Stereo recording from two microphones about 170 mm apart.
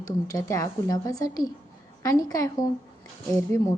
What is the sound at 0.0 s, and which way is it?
A woman's voice, 20° left (ahead or behind).